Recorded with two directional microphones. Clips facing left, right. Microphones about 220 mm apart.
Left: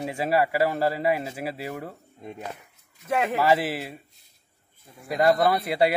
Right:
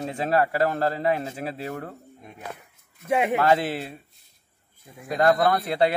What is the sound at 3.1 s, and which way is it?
Speech, 20° right (ahead or behind).